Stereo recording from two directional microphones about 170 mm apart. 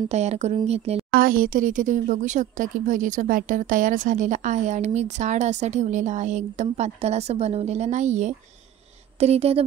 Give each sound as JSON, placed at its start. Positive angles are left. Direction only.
{"t": 0.1, "sound": "speech", "side_deg": -40}
{"t": 1.1, "sound": "speech", "side_deg": -55}